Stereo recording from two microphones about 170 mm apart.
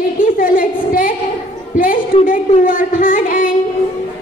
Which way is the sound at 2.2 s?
50° left (ahead or behind).